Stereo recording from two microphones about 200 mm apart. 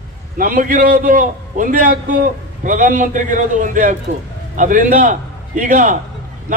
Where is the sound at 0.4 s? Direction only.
45° right (ahead or behind).